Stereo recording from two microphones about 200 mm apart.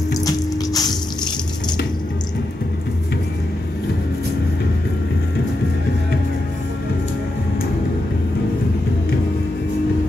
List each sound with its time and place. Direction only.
0.7 s water: 20° left (ahead or behind)